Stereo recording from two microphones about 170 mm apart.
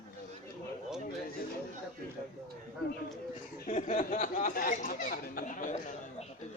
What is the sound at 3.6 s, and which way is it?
Speech, 45° left (ahead or behind).